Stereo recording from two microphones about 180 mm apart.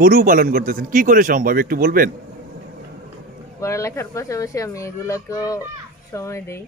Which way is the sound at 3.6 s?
15° left (ahead or behind).